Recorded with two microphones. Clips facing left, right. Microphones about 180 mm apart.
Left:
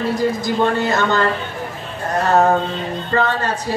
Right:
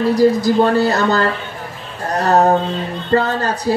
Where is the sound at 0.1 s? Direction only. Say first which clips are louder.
Right 6 dB; 35° right (ahead or behind).